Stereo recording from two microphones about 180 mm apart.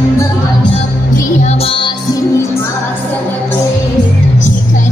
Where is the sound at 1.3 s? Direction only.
35° left (ahead or behind).